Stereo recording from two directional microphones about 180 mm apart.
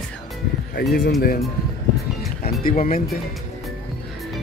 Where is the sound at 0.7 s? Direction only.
60° left (ahead or behind).